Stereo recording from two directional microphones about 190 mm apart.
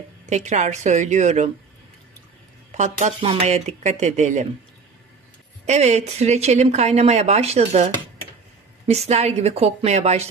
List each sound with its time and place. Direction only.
0.3 s speech: 35° right (ahead or behind)
2.7 s speech: 40° right (ahead or behind)
5.7 s speech: 35° right (ahead or behind)